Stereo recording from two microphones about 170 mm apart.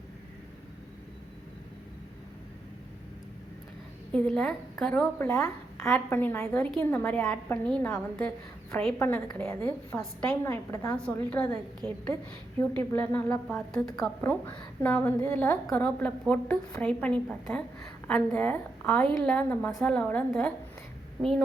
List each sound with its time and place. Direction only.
4.1 s a woman's voice: 5° left (ahead or behind)
5.3 s a woman's voice: 15° left (ahead or behind)
7.2 s a woman's voice: 5° left (ahead or behind)